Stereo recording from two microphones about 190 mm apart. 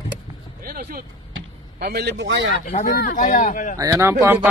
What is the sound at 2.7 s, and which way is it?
Speech, 40° left (ahead or behind).